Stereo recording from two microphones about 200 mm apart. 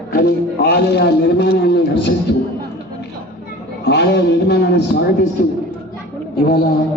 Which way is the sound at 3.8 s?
55° left (ahead or behind).